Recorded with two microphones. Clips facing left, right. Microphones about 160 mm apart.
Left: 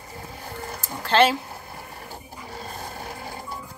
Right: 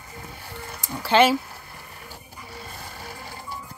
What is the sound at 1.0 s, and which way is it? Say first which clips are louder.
Speech: right 1 dB; 10° right (ahead or behind).